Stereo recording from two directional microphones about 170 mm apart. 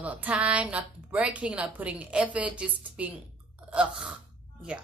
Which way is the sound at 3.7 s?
5° right (ahead or behind).